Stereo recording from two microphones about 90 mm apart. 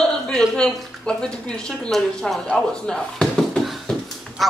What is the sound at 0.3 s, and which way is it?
Speech, 10° left (ahead or behind).